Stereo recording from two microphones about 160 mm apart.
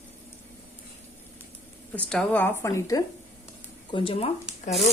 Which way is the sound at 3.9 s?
35° left (ahead or behind).